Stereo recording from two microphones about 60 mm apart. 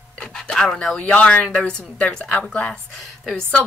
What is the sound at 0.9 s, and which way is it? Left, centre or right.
Speech, left.